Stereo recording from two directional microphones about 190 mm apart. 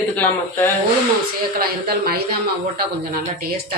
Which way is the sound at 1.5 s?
55° right (ahead or behind).